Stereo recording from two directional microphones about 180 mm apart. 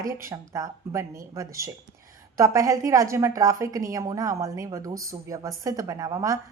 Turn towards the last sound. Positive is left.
turn(degrees=-20)  # may be behind; listen again after turning